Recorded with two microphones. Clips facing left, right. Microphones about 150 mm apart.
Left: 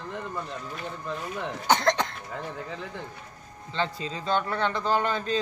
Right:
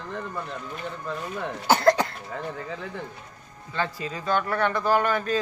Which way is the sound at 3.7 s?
25° left (ahead or behind).